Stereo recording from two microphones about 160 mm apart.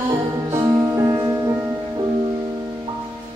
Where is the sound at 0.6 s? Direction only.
20° right (ahead or behind).